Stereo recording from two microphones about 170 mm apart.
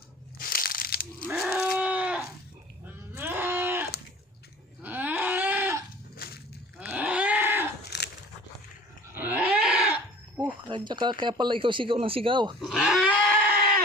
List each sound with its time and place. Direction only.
0.3 s crushing: 60° left (ahead or behind)
1.3 s livestock: 5° right (ahead or behind)
2.8 s a sound: 10° right (ahead or behind)
6.1 s a sound: 65° left (ahead or behind)
6.7 s a sound: 10° right (ahead or behind)
7.9 s dog: 75° left (ahead or behind)
9.1 s goat: 10° right (ahead or behind)
10.7 s speech: 25° right (ahead or behind)
12.5 s speech: 5° right (ahead or behind)